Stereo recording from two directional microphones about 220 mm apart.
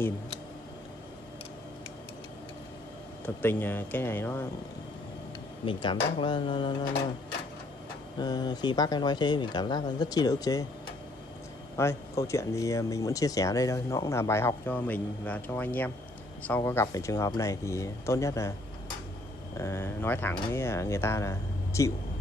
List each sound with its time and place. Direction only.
3.4 s speech: 10° left (ahead or behind)
5.7 s speech: 20° left (ahead or behind)
8.2 s speech: 20° left (ahead or behind)
11.7 s speech: 15° left (ahead or behind)
19.5 s speech: 15° left (ahead or behind)